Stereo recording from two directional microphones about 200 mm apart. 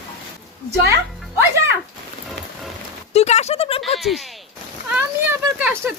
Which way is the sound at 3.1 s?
35° left (ahead or behind).